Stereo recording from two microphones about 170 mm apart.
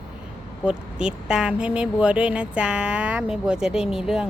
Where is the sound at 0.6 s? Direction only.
5° right (ahead or behind).